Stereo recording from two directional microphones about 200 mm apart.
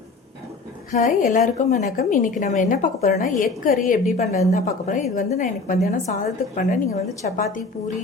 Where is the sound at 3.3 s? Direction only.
Centre (ahead or behind).